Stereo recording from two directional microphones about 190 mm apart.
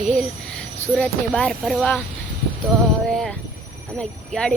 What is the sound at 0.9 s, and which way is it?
Speech, 5° left (ahead or behind).